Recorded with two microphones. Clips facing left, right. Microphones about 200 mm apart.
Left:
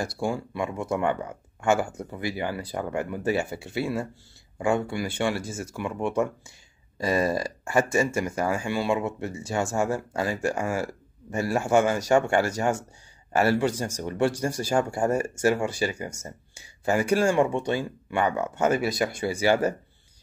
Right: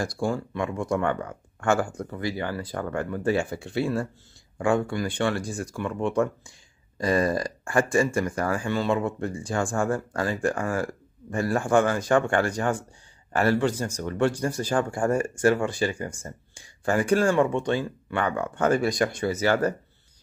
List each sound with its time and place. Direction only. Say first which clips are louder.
0.0 s speech: right 1 dB; 5° left (ahead or behind)